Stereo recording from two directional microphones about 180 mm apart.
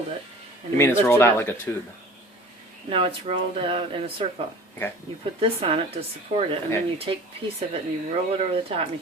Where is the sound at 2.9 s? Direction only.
30° right (ahead or behind).